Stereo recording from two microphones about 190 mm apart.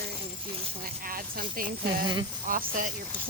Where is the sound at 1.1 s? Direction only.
50° right (ahead or behind).